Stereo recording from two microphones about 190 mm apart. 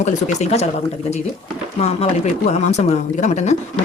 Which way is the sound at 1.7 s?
35° left (ahead or behind).